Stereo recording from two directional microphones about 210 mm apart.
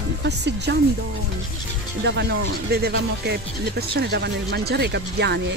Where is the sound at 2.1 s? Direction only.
55° right (ahead or behind).